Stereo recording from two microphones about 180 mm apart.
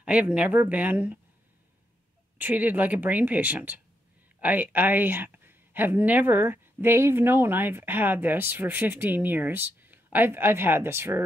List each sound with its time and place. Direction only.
0.0 s speech: 5° right (ahead or behind)
2.3 s speech: 10° right (ahead or behind)